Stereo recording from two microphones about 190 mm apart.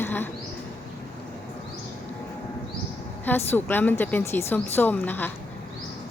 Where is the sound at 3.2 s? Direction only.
10° left (ahead or behind).